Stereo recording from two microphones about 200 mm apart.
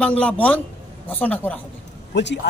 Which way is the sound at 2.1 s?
60° left (ahead or behind).